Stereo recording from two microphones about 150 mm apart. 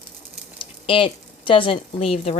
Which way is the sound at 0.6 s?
35° left (ahead or behind).